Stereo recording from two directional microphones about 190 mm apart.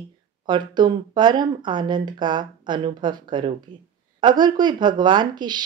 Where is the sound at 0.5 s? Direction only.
25° right (ahead or behind).